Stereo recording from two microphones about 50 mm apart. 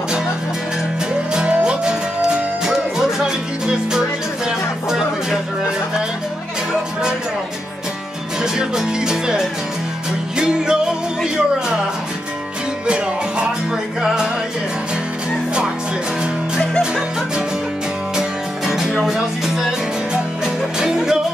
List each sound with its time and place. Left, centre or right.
1.3 s music: centre
6.7 s music: centre
8.4 s music: centre
12.8 s music: right
19.0 s music: centre
20.8 s music: centre